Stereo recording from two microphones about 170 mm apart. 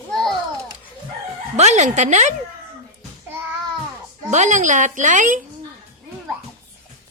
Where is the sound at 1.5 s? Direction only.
40° right (ahead or behind).